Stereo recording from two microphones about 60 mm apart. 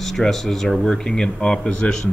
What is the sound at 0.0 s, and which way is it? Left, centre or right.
Speech, centre.